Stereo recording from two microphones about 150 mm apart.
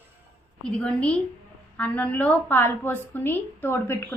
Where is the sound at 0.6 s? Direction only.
5° left (ahead or behind).